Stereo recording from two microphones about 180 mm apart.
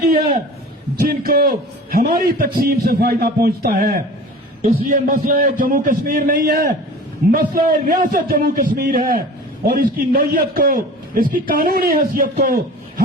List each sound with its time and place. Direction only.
0.9 s a man's voice: 55° right (ahead or behind)